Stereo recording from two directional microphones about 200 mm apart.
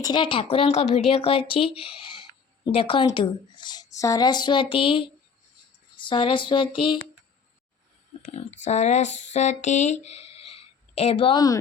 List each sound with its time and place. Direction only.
0.0 s speech: 20° left (ahead or behind)
8.3 s speech: 35° left (ahead or behind)